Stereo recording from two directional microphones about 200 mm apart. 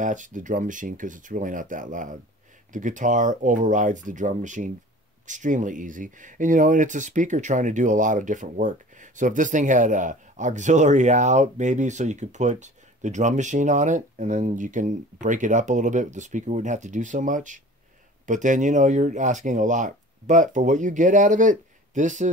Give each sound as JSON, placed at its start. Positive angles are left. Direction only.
{"t": 0.0, "sound": "speech", "side_deg": -40}